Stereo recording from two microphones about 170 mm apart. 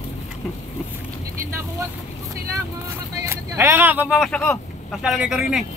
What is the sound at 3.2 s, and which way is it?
Speech, 15° right (ahead or behind).